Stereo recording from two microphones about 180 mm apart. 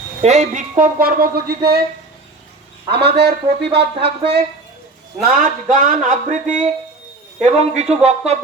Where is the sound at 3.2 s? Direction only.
65° right (ahead or behind).